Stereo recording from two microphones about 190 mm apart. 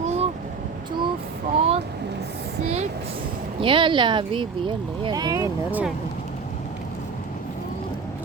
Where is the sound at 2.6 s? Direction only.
35° right (ahead or behind); by 5.4 s 20° right (ahead or behind).